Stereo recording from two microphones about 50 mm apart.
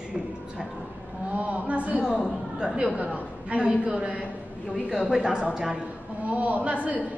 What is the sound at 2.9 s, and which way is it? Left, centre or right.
A woman's voice, right.